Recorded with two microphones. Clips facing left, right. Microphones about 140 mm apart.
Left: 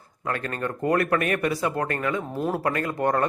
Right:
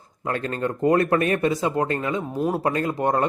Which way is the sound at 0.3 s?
25° right (ahead or behind).